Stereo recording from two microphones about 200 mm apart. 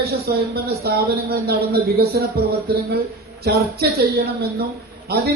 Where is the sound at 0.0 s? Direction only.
50° right (ahead or behind).